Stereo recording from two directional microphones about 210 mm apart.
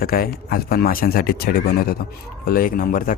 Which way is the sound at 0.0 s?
45° left (ahead or behind).